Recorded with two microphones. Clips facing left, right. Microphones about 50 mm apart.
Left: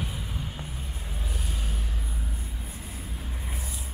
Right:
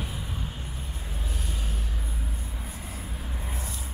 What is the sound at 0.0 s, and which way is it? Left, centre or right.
Vehicle, centre.